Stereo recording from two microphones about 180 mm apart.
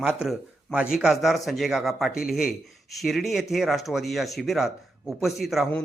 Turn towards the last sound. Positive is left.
turn(degrees=0)  # may be behind; listen again after turning